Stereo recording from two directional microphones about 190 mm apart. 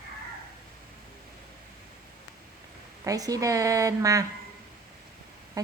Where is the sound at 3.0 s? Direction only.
20° right (ahead or behind).